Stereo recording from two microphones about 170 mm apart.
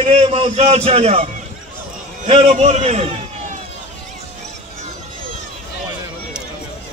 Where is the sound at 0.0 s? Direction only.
35° right (ahead or behind).